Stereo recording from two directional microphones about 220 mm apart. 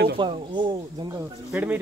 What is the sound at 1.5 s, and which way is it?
Speech, 10° right (ahead or behind).